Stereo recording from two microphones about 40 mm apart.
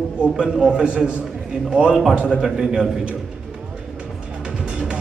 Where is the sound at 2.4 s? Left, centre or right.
Centre.